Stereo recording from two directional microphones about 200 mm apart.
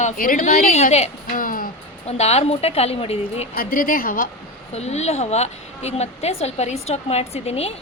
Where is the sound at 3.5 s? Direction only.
45° left (ahead or behind).